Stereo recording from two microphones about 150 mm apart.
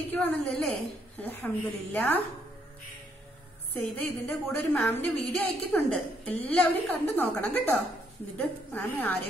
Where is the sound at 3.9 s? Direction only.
10° left (ahead or behind).